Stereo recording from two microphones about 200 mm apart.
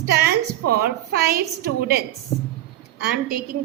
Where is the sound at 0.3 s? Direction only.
50° right (ahead or behind).